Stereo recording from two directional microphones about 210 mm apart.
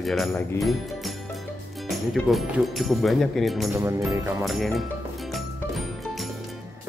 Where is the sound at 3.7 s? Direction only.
15° right (ahead or behind).